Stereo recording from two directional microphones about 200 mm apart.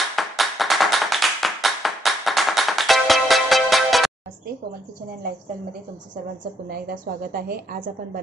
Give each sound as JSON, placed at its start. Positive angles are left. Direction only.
{"t": 0.1, "sound": "clapping", "side_deg": 0}
{"t": 6.7, "sound": "a woman's voice", "side_deg": -50}